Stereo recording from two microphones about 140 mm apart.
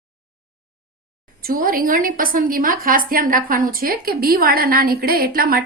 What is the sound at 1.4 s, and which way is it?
A woman's voice, 90° right.